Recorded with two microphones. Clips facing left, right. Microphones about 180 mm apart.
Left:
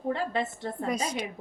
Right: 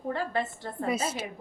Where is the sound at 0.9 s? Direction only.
5° right (ahead or behind).